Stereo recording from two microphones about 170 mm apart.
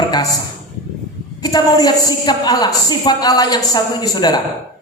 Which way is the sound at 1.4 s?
20° left (ahead or behind).